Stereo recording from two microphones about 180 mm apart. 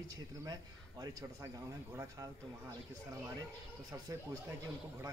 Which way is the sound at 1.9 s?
20° right (ahead or behind).